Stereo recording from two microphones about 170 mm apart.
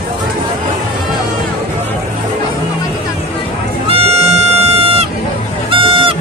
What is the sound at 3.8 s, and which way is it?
Music, 35° right (ahead or behind).